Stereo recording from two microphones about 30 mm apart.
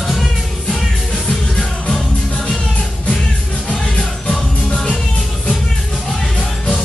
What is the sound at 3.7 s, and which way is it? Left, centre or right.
Music, left.